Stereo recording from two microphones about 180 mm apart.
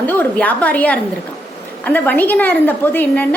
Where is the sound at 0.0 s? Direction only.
10° left (ahead or behind).